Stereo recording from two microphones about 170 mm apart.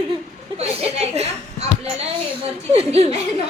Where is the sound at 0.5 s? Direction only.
40° right (ahead or behind).